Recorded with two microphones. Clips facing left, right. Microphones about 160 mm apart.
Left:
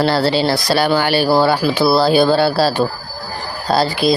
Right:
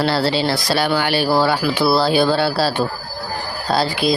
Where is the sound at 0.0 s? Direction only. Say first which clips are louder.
Left 3 dB; 40° left (ahead or behind).